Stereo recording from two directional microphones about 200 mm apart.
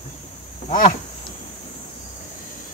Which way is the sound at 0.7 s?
45° left (ahead or behind).